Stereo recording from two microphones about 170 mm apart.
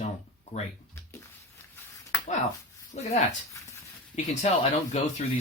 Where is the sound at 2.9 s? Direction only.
50° left (ahead or behind).